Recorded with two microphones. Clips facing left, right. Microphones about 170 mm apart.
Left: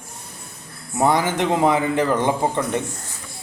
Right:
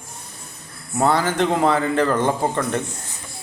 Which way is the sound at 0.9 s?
15° left (ahead or behind).